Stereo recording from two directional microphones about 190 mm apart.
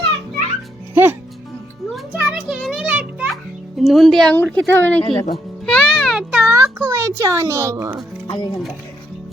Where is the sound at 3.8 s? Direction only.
Centre (ahead or behind).